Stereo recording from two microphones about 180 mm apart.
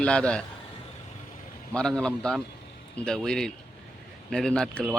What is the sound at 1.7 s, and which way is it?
A man's voice, 5° left (ahead or behind).